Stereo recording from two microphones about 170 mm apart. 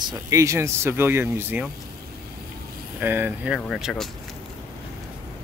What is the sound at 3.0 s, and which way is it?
Speech, 10° right (ahead or behind).